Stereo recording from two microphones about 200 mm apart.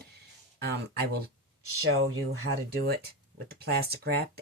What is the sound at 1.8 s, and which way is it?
Speech, 90° right.